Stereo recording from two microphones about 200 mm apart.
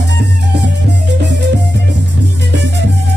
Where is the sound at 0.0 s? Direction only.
60° right (ahead or behind).